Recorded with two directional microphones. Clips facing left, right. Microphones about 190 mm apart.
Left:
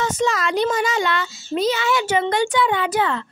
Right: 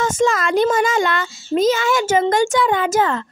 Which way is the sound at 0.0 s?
50° right (ahead or behind).